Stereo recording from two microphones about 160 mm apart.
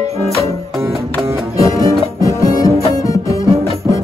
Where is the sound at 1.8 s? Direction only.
20° left (ahead or behind).